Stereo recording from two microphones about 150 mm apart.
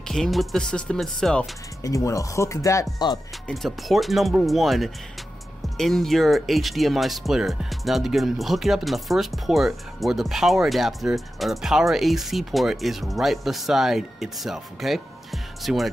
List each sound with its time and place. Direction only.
0.1 s speech: centre (ahead or behind)
1.8 s speech: 20° left (ahead or behind)
3.4 s speech: centre (ahead or behind)